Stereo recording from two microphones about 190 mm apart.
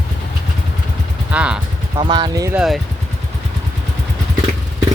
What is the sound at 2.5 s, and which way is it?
Speech, centre (ahead or behind).